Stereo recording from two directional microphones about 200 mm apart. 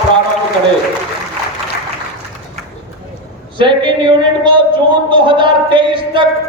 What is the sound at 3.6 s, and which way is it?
A man's voice, 25° right (ahead or behind).